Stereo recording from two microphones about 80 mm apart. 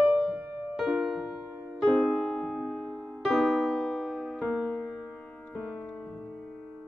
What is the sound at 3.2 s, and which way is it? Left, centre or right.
Electric piano, centre.